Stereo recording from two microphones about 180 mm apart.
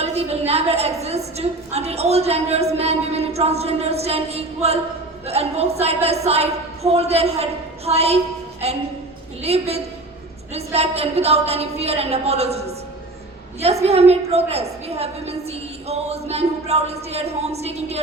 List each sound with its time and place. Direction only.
0.0 s a woman's voice: 35° right (ahead or behind)
9.4 s a woman's voice: 35° right (ahead or behind)